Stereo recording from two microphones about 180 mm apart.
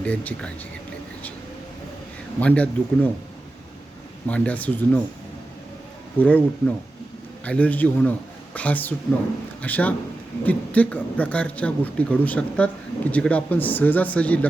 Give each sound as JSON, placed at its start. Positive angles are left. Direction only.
{"t": 0.0, "sound": "speech", "side_deg": 5}
{"t": 2.4, "sound": "speech", "side_deg": 10}
{"t": 4.3, "sound": "speech", "side_deg": 10}
{"t": 6.1, "sound": "speech", "side_deg": 10}